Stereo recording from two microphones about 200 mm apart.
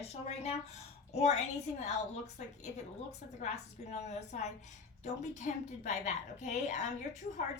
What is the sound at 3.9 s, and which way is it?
A woman's voice, 35° left (ahead or behind).